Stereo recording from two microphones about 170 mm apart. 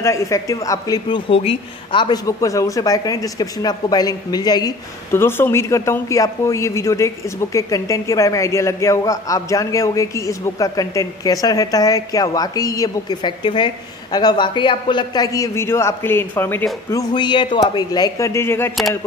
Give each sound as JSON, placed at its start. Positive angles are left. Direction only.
{"t": 0.0, "sound": "a woman's voice", "side_deg": 20}
{"t": 16.9, "sound": "a woman's voice", "side_deg": 25}